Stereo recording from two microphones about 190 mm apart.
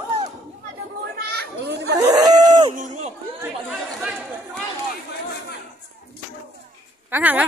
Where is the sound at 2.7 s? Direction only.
40° right (ahead or behind).